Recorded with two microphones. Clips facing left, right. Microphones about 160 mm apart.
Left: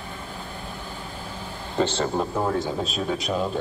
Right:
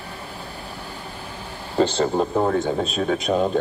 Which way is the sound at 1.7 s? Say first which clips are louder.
Right 4 dB; 10° right (ahead or behind).